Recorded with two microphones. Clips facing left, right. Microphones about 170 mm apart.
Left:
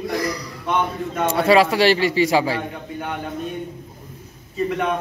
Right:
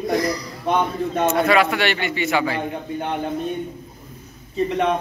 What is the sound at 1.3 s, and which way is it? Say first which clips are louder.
A man's voice: left 4 dB; 30° left (ahead or behind).